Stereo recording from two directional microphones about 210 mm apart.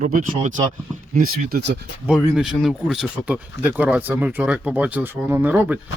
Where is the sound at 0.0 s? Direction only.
40° right (ahead or behind).